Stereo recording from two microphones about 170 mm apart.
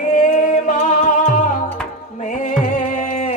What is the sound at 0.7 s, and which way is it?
Music, 50° left (ahead or behind).